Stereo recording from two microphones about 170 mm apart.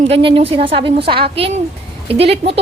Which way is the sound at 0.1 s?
30° right (ahead or behind).